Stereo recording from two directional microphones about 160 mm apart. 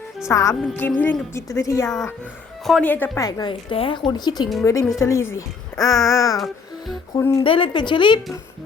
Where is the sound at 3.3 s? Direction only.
25° left (ahead or behind).